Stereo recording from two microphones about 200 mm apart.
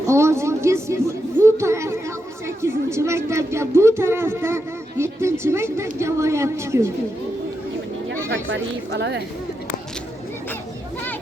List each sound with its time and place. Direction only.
0.1 s a sound: 15° right (ahead or behind)
2.6 s speech: 15° right (ahead or behind)
8.3 s speech: 65° right (ahead or behind)